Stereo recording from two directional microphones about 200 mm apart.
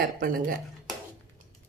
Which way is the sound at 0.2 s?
45° right (ahead or behind).